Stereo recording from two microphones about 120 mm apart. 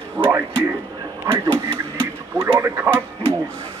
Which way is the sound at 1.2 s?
25° right (ahead or behind).